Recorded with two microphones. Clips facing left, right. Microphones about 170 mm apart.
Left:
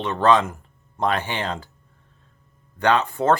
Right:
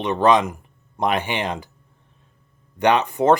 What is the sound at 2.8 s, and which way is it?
Speech, 20° right (ahead or behind).